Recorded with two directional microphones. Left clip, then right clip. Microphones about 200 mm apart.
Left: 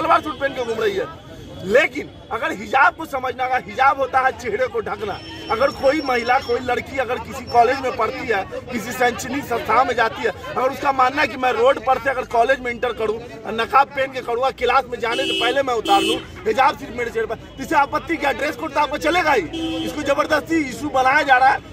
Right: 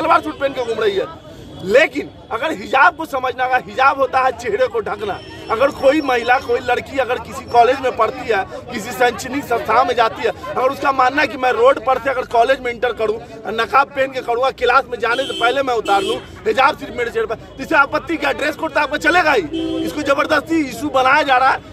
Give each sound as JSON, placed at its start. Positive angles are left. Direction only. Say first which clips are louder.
{"t": 0.0, "sound": "speech", "louder": "right 3 dB", "side_deg": -20}
{"t": 14.2, "sound": "speech", "louder": "right 3 dB", "side_deg": -25}